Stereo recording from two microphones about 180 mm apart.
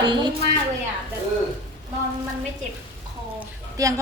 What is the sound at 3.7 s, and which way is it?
Speech, 20° right (ahead or behind).